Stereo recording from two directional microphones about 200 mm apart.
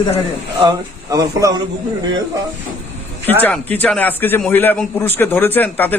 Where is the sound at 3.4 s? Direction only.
10° left (ahead or behind).